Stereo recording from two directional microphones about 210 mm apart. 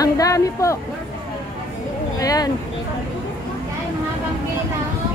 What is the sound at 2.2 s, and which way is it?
Speech, 15° left (ahead or behind).